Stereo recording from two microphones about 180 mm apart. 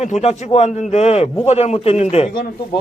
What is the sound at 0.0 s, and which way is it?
A man's voice, 35° left (ahead or behind).